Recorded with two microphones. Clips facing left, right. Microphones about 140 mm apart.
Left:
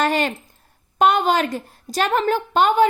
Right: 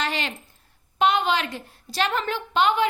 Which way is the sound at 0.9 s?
45° left (ahead or behind).